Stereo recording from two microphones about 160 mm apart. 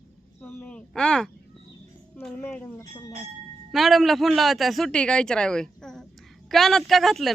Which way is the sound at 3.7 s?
Centre (ahead or behind).